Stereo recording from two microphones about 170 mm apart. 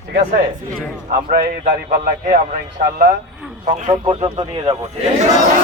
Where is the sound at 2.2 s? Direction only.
45° right (ahead or behind).